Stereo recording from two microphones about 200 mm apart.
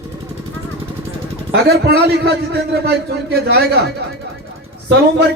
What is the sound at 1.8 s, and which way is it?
A man's voice, 55° right (ahead or behind).